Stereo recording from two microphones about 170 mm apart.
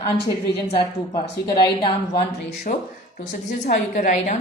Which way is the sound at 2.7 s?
50° left (ahead or behind).